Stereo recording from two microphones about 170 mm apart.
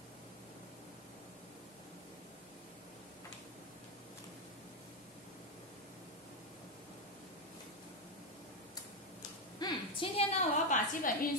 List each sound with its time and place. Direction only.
9.6 s a woman's voice: 35° left (ahead or behind); by 11.1 s 50° left (ahead or behind)